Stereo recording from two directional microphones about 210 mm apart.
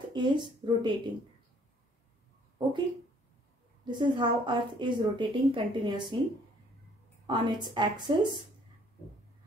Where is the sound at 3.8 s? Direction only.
20° right (ahead or behind).